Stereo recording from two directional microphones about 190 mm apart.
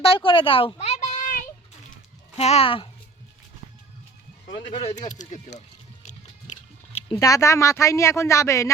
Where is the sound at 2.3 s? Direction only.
35° left (ahead or behind).